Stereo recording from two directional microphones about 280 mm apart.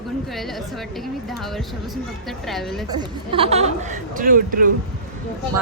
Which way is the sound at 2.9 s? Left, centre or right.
Centre.